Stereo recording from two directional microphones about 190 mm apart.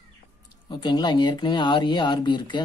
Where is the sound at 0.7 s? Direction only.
25° left (ahead or behind).